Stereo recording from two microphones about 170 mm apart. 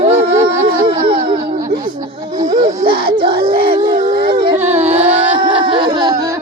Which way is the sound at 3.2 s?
30° right (ahead or behind).